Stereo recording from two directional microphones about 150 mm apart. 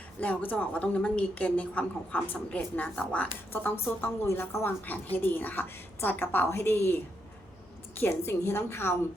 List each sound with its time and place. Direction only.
0.2 s a woman's voice: 10° left (ahead or behind)